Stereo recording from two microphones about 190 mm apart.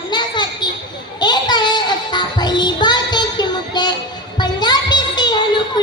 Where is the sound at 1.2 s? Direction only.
20° left (ahead or behind).